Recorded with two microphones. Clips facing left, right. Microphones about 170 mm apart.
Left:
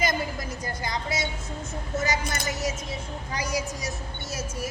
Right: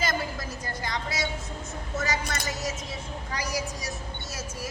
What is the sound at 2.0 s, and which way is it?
A woman's voice, 20° left (ahead or behind).